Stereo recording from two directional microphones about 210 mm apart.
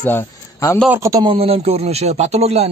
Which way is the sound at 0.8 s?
10° right (ahead or behind).